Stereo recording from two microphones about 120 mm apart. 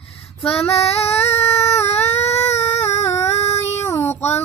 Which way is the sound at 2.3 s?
65° left (ahead or behind).